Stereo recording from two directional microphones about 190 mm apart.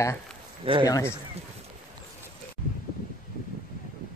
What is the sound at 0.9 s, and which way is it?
Speech, 15° left (ahead or behind).